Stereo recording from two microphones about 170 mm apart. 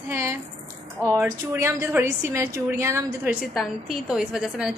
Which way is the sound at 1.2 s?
15° right (ahead or behind).